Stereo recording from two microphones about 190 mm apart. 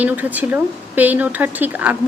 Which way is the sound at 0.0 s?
10° right (ahead or behind).